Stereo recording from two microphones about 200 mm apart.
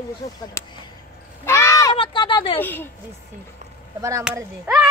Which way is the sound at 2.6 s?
10° left (ahead or behind).